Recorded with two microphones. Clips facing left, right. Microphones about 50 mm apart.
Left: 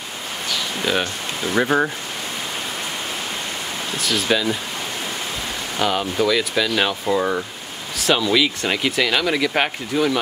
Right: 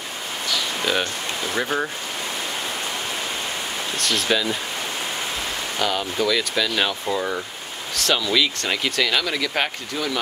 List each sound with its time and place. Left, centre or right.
1.5 s speech: centre
4.0 s speech: centre
5.8 s speech: centre